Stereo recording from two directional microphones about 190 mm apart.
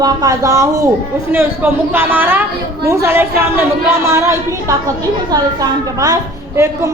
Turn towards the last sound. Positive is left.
turn(degrees=-15)  # may be behind; listen again after turning